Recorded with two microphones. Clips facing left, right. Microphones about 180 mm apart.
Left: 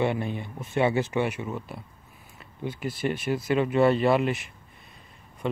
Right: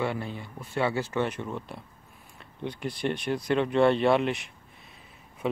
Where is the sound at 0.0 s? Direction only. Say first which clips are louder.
Left 4 dB; 20° left (ahead or behind).